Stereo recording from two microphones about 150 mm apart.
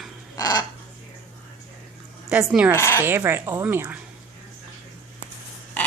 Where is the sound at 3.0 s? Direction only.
15° right (ahead or behind).